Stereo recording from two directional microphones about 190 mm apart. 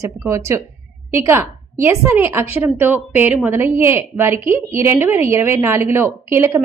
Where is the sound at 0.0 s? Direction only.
15° right (ahead or behind).